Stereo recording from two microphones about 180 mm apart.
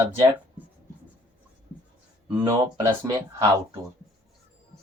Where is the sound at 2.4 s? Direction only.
15° right (ahead or behind).